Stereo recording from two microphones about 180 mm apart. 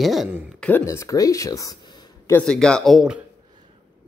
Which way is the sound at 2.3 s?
5° left (ahead or behind).